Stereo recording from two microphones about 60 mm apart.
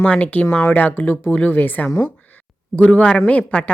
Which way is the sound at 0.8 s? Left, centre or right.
Left.